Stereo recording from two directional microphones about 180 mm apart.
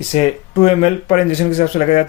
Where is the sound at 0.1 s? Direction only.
35° left (ahead or behind).